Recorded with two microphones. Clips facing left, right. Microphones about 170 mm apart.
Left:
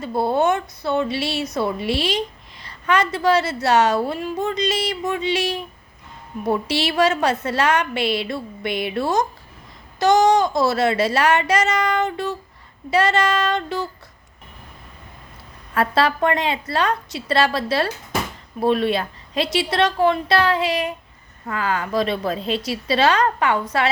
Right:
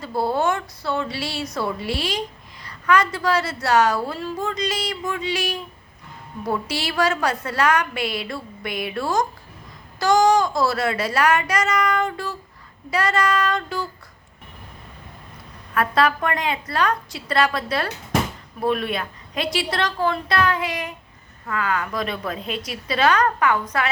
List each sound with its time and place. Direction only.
0.0 s a woman's voice: 25° left (ahead or behind)
15.7 s a woman's voice: 30° left (ahead or behind)